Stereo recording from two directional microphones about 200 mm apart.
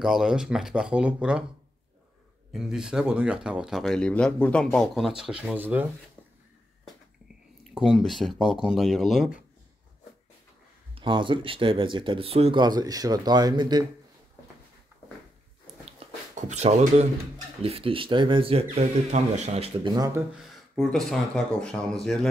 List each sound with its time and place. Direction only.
0.0 s speech: centre (ahead or behind)
2.5 s speech: 5° right (ahead or behind)
7.7 s speech: centre (ahead or behind)
11.0 s speech: 25° right (ahead or behind)
16.0 s a sound: 35° right (ahead or behind)
17.6 s speech: 30° right (ahead or behind)
20.3 s speech: centre (ahead or behind)